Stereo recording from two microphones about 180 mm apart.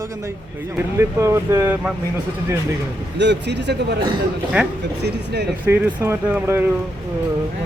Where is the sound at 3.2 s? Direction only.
75° right (ahead or behind).